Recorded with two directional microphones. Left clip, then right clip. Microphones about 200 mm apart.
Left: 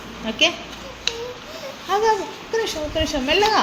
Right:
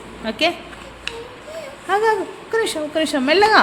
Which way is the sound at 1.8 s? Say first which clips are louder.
Right 2 dB; 30° right (ahead or behind).